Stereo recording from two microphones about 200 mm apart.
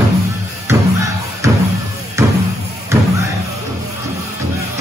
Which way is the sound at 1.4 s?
15° right (ahead or behind).